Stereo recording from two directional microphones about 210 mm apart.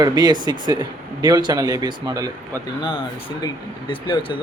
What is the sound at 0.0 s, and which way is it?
Speech, 20° right (ahead or behind).